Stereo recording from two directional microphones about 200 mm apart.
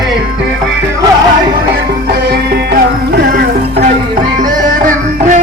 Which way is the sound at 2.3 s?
50° right (ahead or behind).